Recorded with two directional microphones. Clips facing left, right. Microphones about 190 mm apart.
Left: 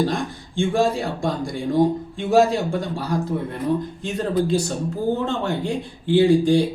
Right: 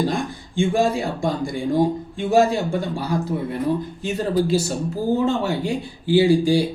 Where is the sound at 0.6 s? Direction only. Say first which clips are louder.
Right 1 dB; centre (ahead or behind).